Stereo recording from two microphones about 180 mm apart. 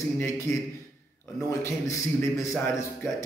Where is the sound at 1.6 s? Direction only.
15° left (ahead or behind).